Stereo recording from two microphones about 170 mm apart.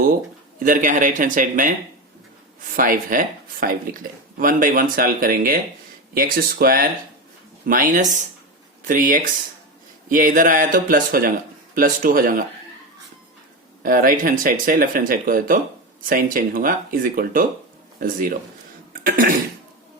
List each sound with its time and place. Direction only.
0.6 s speech: 50° right (ahead or behind)
2.7 s speech: 55° right (ahead or behind)
13.8 s speech: 55° right (ahead or behind)
18.9 s cough: 55° right (ahead or behind)